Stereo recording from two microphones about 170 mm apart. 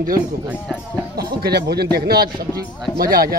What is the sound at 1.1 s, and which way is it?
A man's voice, 65° right (ahead or behind).